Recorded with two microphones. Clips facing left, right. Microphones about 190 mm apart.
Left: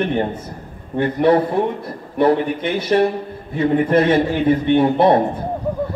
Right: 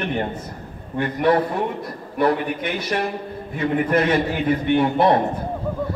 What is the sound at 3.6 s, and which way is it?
A man's voice, 30° left (ahead or behind).